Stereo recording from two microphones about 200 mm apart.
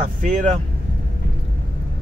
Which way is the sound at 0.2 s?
40° right (ahead or behind).